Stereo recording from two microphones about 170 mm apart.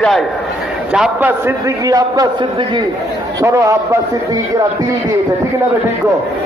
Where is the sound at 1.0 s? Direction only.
10° right (ahead or behind).